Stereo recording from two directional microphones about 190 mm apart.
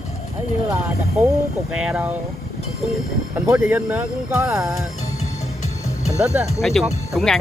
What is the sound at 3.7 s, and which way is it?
Speech, 10° right (ahead or behind).